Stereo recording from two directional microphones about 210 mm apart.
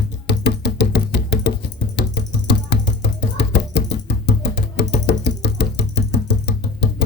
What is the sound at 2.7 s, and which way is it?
Music, 55° left (ahead or behind).